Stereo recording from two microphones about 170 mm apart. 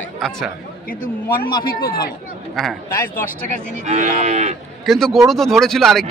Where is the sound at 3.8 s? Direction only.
45° right (ahead or behind).